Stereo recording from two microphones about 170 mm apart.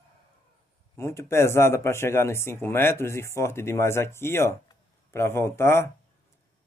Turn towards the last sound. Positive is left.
turn(degrees=15)  # may be behind; listen again after turning